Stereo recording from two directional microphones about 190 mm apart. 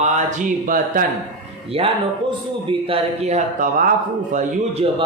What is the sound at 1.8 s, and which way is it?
Speech, 30° right (ahead or behind).